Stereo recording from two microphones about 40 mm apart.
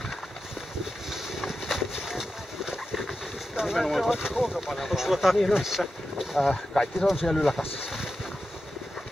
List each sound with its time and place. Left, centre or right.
1.7 s boat: centre
3.8 s speech: centre
6.4 s speech: centre
7.8 s boat: centre